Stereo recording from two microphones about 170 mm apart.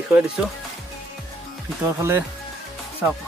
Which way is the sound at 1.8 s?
15° right (ahead or behind).